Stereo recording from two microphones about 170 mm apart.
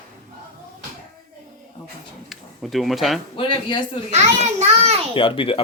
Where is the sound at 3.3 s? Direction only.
30° left (ahead or behind).